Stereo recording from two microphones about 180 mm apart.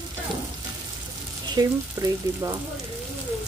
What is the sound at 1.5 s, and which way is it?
Stir, 20° right (ahead or behind).